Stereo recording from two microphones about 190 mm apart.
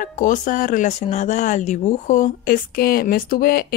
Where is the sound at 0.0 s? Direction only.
45° left (ahead or behind).